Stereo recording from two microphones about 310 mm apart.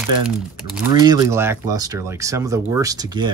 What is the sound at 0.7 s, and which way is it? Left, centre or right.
Speech, centre.